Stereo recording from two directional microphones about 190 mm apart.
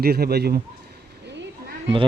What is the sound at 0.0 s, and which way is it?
Speech, 55° right (ahead or behind).